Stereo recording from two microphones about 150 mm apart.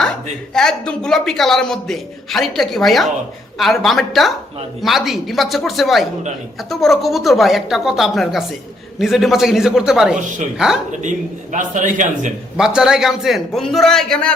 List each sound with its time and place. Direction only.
0.5 s a man's voice: 5° left (ahead or behind)
10.2 s a man's voice: 55° right (ahead or behind)
11.5 s a man's voice: 60° right (ahead or behind)
12.5 s a man's voice: 5° right (ahead or behind)